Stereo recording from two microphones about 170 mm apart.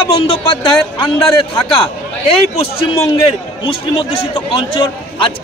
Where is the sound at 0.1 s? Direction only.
35° left (ahead or behind).